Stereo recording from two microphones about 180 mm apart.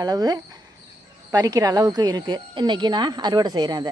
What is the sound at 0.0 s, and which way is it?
Speech, 20° right (ahead or behind).